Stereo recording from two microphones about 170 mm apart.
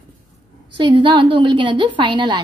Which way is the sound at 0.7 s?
30° right (ahead or behind).